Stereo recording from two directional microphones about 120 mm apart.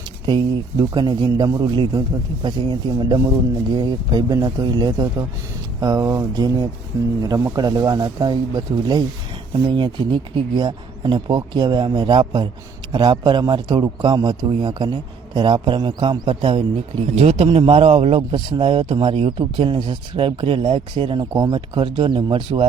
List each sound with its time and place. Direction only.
0.3 s speech: 40° right (ahead or behind); by 18.2 s 55° right (ahead or behind)
18.2 s speech: 45° right (ahead or behind)